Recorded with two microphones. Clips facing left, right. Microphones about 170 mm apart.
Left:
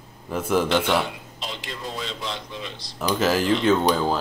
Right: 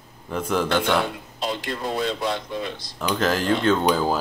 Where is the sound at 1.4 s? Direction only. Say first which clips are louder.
Right 8 dB; 55° right (ahead or behind).